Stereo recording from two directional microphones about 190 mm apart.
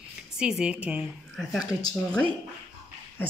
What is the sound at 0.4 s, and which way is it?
A woman's voice, 5° right (ahead or behind).